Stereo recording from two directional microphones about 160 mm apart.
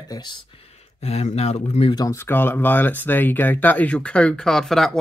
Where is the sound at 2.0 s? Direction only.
20° left (ahead or behind).